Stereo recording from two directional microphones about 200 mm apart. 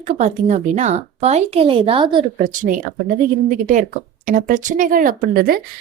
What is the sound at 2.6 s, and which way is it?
Speech, 45° right (ahead or behind).